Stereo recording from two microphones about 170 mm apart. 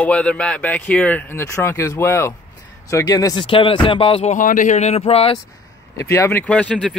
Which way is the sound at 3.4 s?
30° left (ahead or behind).